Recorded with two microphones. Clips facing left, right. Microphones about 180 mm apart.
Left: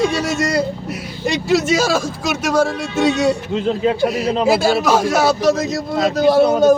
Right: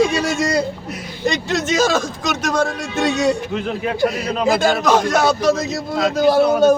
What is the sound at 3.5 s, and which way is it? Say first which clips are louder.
Speech: left 5 dB; 25° left (ahead or behind).